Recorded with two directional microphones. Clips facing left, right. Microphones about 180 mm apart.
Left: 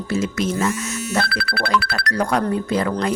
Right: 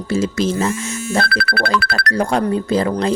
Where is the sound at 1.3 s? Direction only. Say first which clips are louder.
Right 4 dB; 55° right (ahead or behind).